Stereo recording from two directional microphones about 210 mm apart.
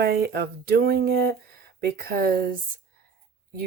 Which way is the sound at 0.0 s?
45° right (ahead or behind).